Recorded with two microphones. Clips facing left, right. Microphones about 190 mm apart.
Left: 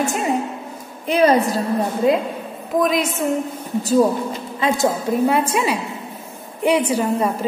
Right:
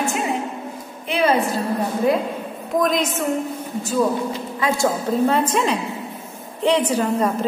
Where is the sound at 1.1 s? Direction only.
40° left (ahead or behind).